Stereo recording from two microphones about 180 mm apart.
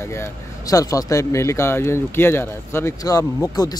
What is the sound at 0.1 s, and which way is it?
Speech, 15° left (ahead or behind).